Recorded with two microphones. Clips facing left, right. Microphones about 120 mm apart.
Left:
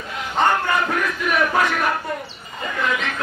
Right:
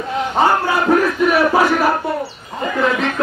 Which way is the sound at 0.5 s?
35° right (ahead or behind).